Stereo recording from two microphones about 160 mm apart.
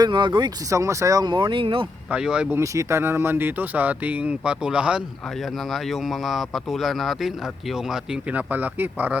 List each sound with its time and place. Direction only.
0.0 s speech: 30° right (ahead or behind)
2.0 s speech: 5° right (ahead or behind)
2.6 s speech: 15° right (ahead or behind)